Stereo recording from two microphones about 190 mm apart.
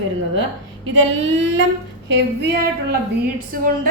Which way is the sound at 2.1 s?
60° right (ahead or behind).